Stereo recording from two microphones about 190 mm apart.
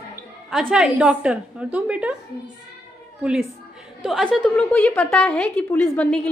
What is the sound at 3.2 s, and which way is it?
A woman's voice, 5° right (ahead or behind).